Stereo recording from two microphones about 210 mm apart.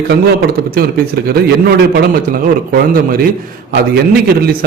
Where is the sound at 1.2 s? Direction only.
50° right (ahead or behind).